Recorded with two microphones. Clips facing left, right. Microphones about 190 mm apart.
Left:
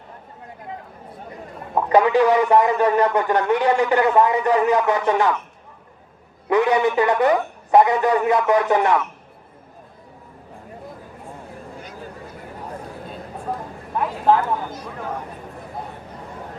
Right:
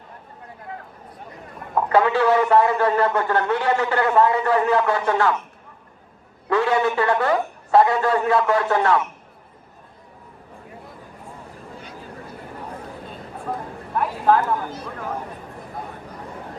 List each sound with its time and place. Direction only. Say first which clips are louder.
1.7 s a man's voice: left 2 dB; 15° left (ahead or behind)
6.5 s a man's voice: left 2 dB; 20° left (ahead or behind)
13.9 s a sound: even; 20° left (ahead or behind)